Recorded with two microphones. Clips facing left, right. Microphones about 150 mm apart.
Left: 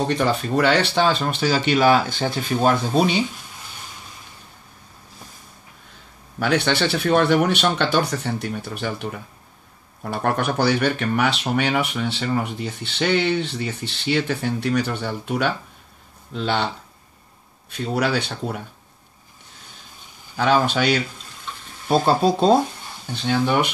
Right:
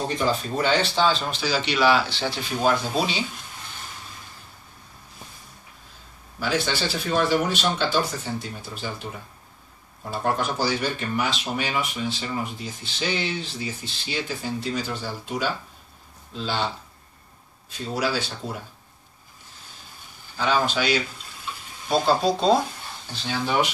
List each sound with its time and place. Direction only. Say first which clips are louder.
0.1 s speech: left 4 dB; 70° left (ahead or behind)
6.4 s speech: left 5 dB; 65° left (ahead or behind)
10.0 s speech: left 3 dB; 65° left (ahead or behind)
17.6 s speech: left 4 dB; 60° left (ahead or behind)
20.3 s speech: left 4 dB; 60° left (ahead or behind)